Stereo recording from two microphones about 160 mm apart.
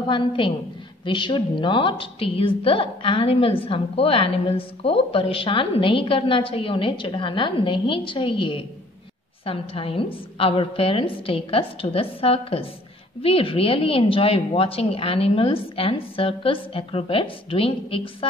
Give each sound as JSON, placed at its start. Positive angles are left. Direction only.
{"t": 0.4, "sound": "a woman's voice", "side_deg": 30}